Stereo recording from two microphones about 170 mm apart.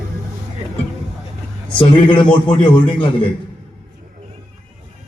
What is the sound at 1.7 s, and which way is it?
A man's voice, 30° left (ahead or behind).